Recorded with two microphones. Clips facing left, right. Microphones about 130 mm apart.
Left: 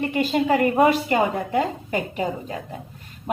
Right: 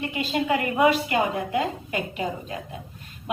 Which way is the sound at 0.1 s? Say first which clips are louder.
Left 3 dB; 45° left (ahead or behind).